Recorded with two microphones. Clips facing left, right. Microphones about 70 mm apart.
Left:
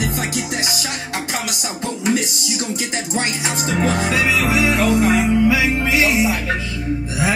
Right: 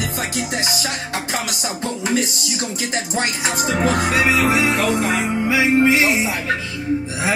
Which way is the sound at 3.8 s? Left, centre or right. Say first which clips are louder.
Right 1 dB; right.